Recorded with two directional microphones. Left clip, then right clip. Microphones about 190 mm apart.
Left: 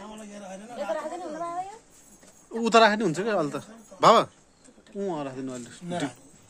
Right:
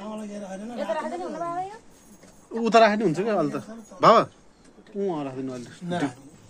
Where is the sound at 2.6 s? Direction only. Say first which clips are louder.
Right 1 dB; 30° left (ahead or behind).